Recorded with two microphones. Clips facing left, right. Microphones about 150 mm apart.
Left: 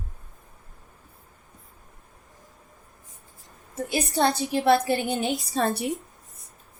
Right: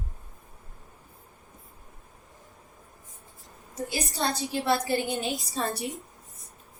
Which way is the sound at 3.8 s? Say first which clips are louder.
Left 6 dB; 60° left (ahead or behind).